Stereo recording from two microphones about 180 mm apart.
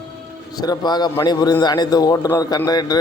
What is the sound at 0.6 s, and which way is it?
Speech, 20° left (ahead or behind).